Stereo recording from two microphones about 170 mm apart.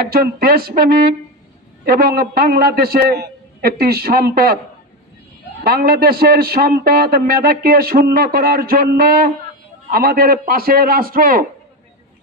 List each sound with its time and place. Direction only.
0.0 s a man's voice: 60° right (ahead or behind)
5.6 s a man's voice: 60° right (ahead or behind)